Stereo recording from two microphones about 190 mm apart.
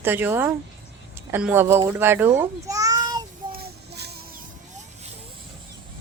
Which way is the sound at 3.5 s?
60° right (ahead or behind).